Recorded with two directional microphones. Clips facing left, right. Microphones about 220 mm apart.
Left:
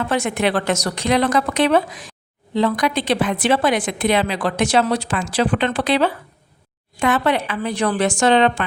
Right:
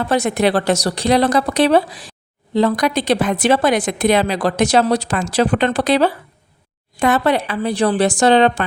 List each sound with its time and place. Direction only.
0.0 s a woman's voice: 35° right (ahead or behind)